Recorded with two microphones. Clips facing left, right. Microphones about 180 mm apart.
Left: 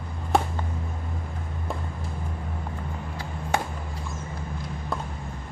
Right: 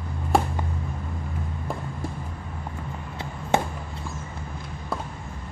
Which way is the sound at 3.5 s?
25° right (ahead or behind).